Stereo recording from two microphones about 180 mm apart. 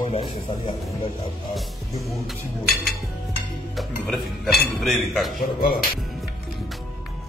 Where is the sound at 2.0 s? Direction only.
Centre (ahead or behind).